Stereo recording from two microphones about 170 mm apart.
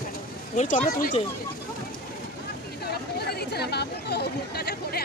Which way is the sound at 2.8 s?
70° left (ahead or behind).